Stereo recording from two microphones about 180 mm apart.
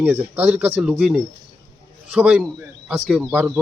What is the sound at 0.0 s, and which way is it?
Speech, 10° right (ahead or behind).